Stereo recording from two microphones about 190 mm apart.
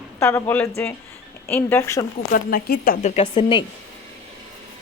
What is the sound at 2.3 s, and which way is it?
Speech, 50° left (ahead or behind).